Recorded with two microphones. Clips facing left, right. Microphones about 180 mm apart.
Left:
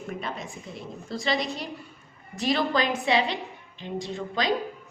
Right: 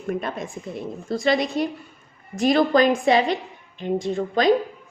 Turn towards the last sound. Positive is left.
turn(degrees=-50)  # may be behind; listen again after turning